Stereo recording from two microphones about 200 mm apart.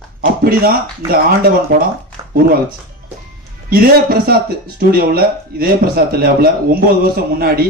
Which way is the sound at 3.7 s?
50° right (ahead or behind).